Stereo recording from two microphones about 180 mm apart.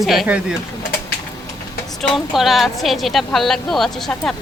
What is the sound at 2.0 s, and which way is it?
A woman's voice, centre (ahead or behind).